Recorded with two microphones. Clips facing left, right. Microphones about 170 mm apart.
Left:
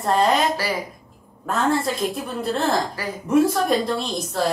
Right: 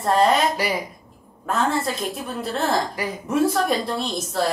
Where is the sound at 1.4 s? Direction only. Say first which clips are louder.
Left 1 dB; centre (ahead or behind).